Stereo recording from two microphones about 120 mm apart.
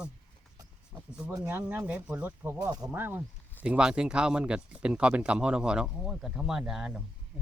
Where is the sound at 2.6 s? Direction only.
30° right (ahead or behind).